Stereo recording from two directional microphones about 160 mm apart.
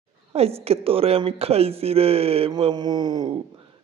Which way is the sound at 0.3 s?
40° right (ahead or behind).